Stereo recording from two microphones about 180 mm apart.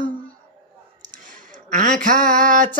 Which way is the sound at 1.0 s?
45° right (ahead or behind).